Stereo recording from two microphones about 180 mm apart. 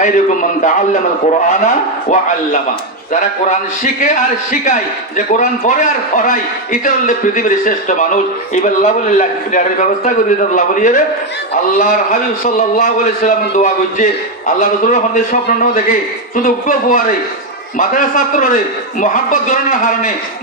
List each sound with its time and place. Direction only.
0.0 s a man's voice: 45° left (ahead or behind)